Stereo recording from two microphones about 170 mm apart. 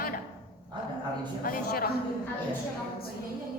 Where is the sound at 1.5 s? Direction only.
60° left (ahead or behind).